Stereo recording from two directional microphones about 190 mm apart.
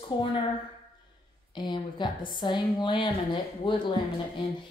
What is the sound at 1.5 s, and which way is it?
Speech, 25° left (ahead or behind).